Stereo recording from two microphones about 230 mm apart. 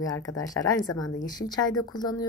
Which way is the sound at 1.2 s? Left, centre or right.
Centre.